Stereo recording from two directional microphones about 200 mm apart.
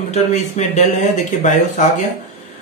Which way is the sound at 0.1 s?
35° left (ahead or behind).